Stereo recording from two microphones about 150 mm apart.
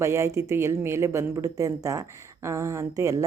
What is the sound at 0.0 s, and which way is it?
A woman's voice, 20° right (ahead or behind).